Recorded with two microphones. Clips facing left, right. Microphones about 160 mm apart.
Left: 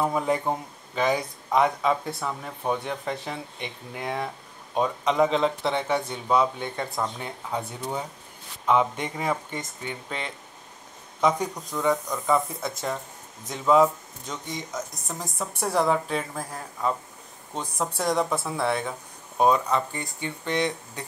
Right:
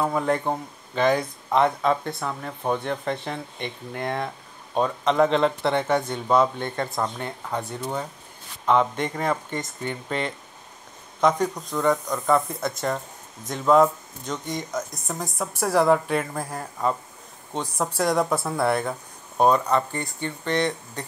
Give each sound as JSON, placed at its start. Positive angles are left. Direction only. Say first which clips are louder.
{"t": 0.0, "sound": "speech", "louder": "right 1 dB", "side_deg": 5}